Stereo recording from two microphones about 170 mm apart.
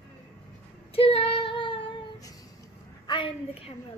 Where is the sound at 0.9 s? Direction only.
35° left (ahead or behind).